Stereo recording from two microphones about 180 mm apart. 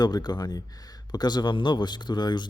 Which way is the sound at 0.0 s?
20° left (ahead or behind).